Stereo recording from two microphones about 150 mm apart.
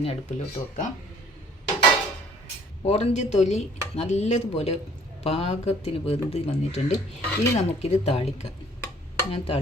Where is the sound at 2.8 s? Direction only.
45° left (ahead or behind).